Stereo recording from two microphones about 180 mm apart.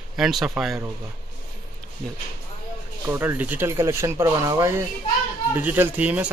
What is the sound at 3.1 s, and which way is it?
Speech, 10° right (ahead or behind).